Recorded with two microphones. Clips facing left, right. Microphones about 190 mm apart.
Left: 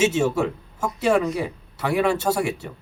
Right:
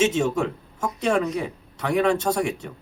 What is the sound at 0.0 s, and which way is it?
A man's voice, 5° left (ahead or behind).